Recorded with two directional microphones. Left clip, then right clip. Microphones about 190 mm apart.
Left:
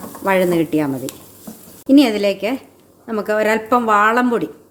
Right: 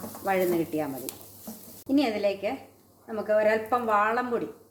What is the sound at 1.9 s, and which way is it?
Speech, 60° left (ahead or behind).